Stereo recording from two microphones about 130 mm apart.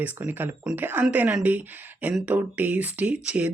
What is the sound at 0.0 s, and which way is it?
Speech, 15° right (ahead or behind).